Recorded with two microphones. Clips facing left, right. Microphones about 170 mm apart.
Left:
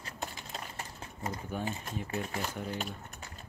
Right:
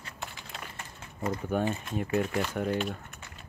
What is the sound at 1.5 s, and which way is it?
Speech, 65° right (ahead or behind).